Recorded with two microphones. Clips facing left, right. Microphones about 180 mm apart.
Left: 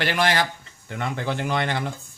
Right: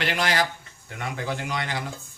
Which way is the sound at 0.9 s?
60° left (ahead or behind).